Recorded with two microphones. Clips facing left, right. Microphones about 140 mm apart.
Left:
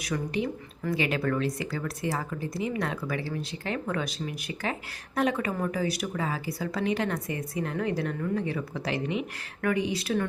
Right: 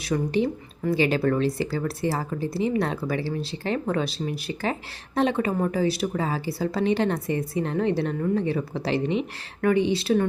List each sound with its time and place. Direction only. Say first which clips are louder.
0.0 s speech: right 6 dB; 30° right (ahead or behind)